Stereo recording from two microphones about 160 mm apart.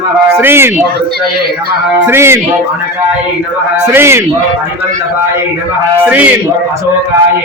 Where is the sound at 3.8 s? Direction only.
15° right (ahead or behind).